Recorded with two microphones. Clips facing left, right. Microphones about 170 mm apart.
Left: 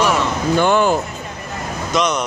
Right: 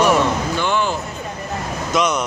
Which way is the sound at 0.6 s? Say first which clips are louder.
Left 6 dB; 50° left (ahead or behind).